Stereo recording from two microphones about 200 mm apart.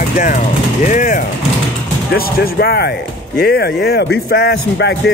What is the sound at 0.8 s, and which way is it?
Speech, 40° left (ahead or behind).